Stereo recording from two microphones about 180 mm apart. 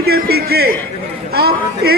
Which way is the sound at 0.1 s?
60° right (ahead or behind).